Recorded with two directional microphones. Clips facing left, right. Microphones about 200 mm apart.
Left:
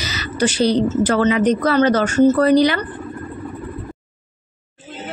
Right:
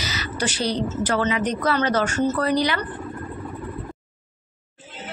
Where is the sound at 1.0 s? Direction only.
50° left (ahead or behind).